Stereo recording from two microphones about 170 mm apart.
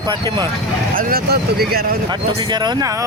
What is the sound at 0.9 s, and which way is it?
Speech, 65° right (ahead or behind).